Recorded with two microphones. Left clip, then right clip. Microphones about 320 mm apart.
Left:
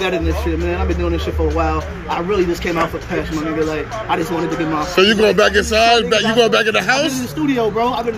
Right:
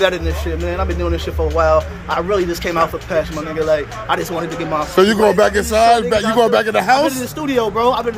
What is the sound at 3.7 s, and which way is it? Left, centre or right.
A man's voice, centre.